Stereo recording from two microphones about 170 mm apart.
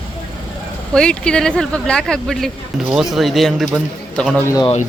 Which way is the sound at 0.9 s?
5° left (ahead or behind).